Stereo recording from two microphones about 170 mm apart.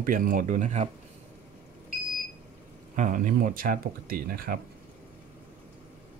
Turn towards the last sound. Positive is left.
turn(degrees=-60)  # may be behind; listen again after turning